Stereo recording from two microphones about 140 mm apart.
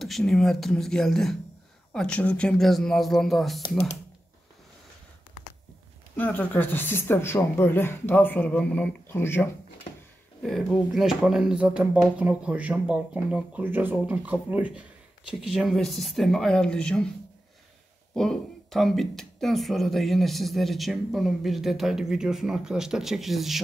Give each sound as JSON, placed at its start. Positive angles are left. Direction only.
{"t": 0.0, "sound": "speech", "side_deg": 0}
{"t": 6.1, "sound": "speech", "side_deg": 10}
{"t": 10.4, "sound": "speech", "side_deg": 0}
{"t": 18.1, "sound": "speech", "side_deg": 5}